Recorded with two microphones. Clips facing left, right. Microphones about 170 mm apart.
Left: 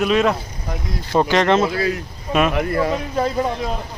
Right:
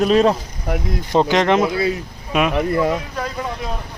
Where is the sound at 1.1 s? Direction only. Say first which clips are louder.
Even; 15° right (ahead or behind).